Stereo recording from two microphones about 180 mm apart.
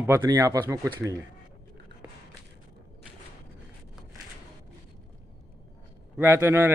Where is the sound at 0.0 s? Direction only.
15° right (ahead or behind).